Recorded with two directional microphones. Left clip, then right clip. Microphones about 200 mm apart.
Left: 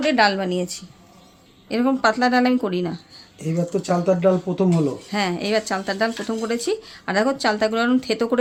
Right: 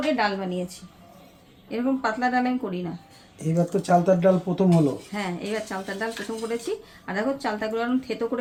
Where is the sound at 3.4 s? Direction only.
5° left (ahead or behind).